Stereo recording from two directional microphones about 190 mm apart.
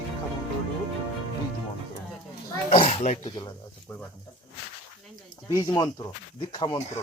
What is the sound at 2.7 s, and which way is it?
Speech, 30° left (ahead or behind).